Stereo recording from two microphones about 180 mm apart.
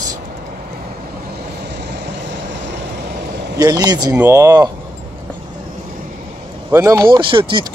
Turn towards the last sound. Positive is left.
turn(degrees=-30)  # may be behind; listen again after turning